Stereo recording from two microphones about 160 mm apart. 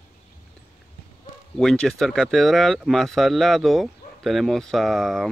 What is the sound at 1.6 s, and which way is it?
Speech, 5° left (ahead or behind).